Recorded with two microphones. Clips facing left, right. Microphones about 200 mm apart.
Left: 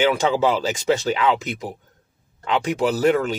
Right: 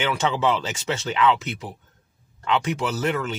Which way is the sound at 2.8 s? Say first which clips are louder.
Left 7 dB; 35° left (ahead or behind).